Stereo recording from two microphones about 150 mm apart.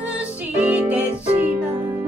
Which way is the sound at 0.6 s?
10° right (ahead or behind).